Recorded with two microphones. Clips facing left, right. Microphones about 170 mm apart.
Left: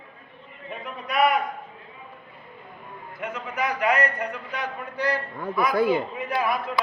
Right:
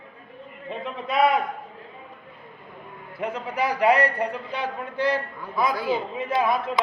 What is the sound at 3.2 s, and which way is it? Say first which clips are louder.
A man's voice: right 3 dB; 30° right (ahead or behind).